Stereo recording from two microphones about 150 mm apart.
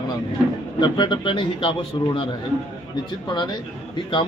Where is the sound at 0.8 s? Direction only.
30° left (ahead or behind).